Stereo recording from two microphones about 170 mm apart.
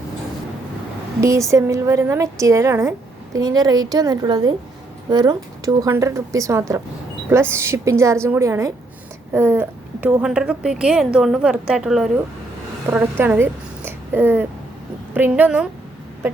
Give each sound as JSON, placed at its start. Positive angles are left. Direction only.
{"t": 1.2, "sound": "a woman's voice", "side_deg": -20}